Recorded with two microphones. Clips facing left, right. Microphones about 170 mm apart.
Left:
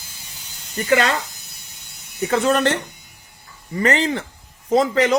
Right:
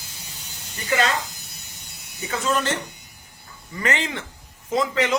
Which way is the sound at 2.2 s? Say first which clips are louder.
Left 7 dB; 65° left (ahead or behind).